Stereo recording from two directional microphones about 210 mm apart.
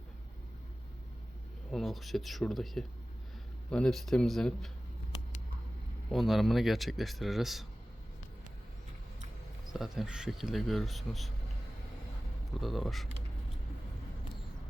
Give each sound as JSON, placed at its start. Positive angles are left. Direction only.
{"t": 1.7, "sound": "speech", "side_deg": 0}
{"t": 6.1, "sound": "speech", "side_deg": 0}
{"t": 9.7, "sound": "speech", "side_deg": 0}
{"t": 12.5, "sound": "speech", "side_deg": 0}